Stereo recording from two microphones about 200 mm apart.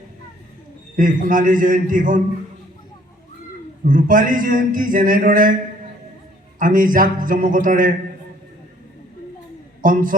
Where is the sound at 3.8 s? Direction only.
40° right (ahead or behind).